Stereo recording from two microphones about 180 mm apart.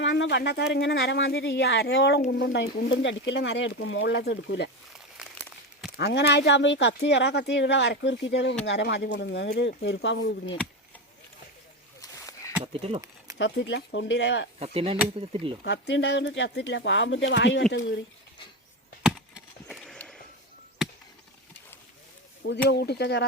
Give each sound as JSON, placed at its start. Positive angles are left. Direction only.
{"t": 0.0, "sound": "speech", "side_deg": 75}
{"t": 5.1, "sound": "crumpling", "side_deg": -5}
{"t": 6.0, "sound": "speech", "side_deg": 65}
{"t": 11.9, "sound": "a sound", "side_deg": 20}
{"t": 12.6, "sound": "speech", "side_deg": -35}
{"t": 13.4, "sound": "speech", "side_deg": 80}
{"t": 14.6, "sound": "speech", "side_deg": -35}
{"t": 15.6, "sound": "speech", "side_deg": 75}
{"t": 19.0, "sound": "wood", "side_deg": 0}
{"t": 22.4, "sound": "speech", "side_deg": 70}